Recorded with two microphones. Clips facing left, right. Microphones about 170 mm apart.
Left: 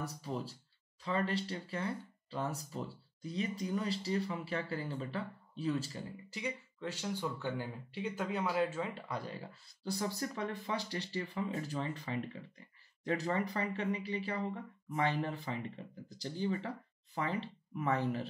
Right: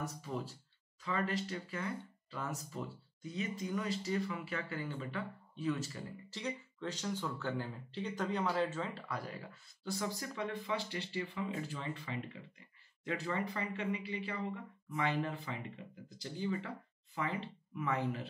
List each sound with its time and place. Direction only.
0.0 s speech: 35° left (ahead or behind)
6.3 s speech: 10° left (ahead or behind); by 18.3 s 35° left (ahead or behind)